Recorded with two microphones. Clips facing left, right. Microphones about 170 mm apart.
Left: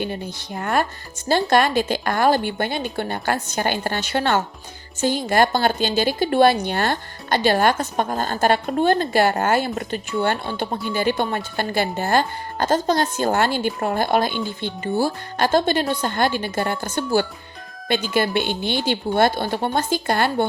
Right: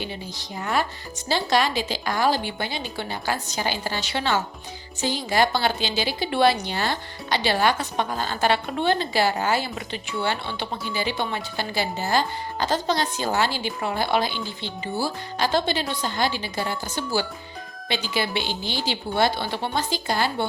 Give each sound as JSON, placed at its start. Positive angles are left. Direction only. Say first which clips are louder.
{"t": 0.0, "sound": "a woman's voice", "louder": "left 6 dB", "side_deg": 55}